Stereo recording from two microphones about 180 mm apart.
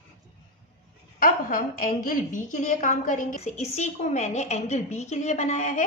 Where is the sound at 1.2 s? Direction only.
50° left (ahead or behind).